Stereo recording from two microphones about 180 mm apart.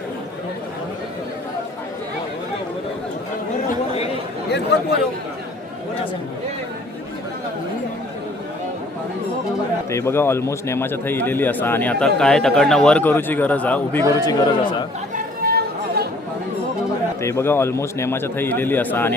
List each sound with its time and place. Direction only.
4.7 s a man's voice: 75° left (ahead or behind)
9.9 s a man's voice: 15° left (ahead or behind)
14.2 s a man's voice: 20° left (ahead or behind)
15.1 s chatter: 55° right (ahead or behind)
17.2 s a man's voice: 15° left (ahead or behind)